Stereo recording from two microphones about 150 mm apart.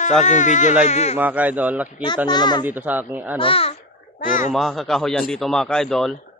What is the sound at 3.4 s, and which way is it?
Speech, 40° left (ahead or behind).